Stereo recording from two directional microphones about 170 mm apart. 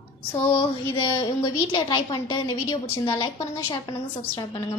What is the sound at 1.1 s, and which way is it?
A woman's voice, 25° left (ahead or behind).